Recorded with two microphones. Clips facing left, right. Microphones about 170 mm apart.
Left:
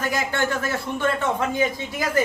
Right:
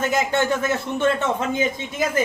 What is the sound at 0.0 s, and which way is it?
Speech, 20° right (ahead or behind).